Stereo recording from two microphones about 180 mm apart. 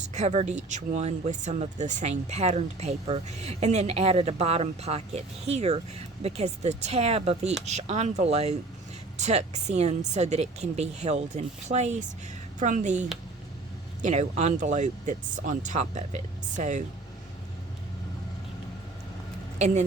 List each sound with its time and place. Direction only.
0.1 s speech: 40° right (ahead or behind)
19.5 s speech: 40° right (ahead or behind)